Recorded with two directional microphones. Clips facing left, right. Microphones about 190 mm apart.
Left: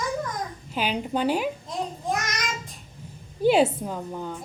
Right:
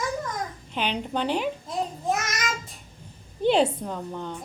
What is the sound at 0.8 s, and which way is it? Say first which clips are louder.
Speech: left 2 dB; 5° left (ahead or behind).